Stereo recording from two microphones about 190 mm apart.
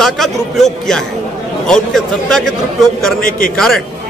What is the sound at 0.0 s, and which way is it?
Speech, centre (ahead or behind).